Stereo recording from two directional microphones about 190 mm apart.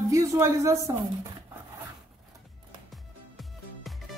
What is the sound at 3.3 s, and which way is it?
Music, centre (ahead or behind).